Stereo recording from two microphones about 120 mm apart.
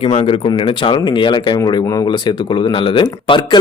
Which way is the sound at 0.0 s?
55° left (ahead or behind).